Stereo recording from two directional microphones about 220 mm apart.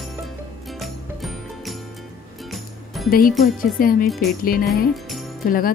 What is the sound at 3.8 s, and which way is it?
Speech, 40° left (ahead or behind).